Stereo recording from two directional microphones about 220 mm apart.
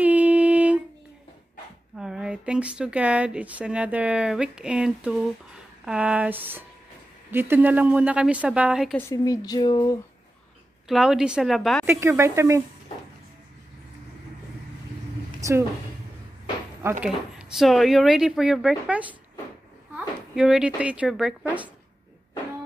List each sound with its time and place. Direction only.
0.0 s a sound: 5° right (ahead or behind)
2.0 s speech: 5° right (ahead or behind)
8.9 s speech: 15° left (ahead or behind)
10.9 s speech: 5° right (ahead or behind)
11.8 s speech: 10° right (ahead or behind)
15.4 s a woman's voice: 15° right (ahead or behind)
17.0 s speech: 5° right (ahead or behind)
20.3 s speech: 5° right (ahead or behind)